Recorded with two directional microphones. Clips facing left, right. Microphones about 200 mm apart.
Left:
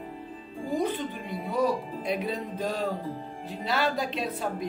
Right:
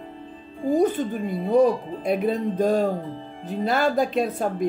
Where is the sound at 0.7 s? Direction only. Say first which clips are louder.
Right 7 dB; 45° right (ahead or behind).